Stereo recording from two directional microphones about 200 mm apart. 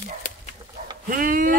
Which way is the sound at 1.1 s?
45° right (ahead or behind).